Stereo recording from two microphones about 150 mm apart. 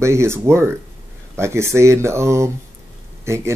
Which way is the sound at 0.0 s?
20° right (ahead or behind).